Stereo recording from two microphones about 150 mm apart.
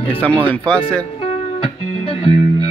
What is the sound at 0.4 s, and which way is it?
Speech, 35° right (ahead or behind).